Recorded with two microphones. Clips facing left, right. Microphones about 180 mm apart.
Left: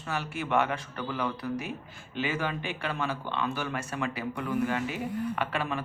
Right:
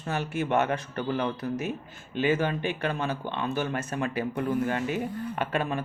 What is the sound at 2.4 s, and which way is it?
Speech, 45° right (ahead or behind).